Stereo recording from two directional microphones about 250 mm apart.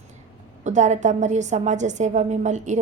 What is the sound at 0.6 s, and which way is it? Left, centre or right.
A woman's voice, right.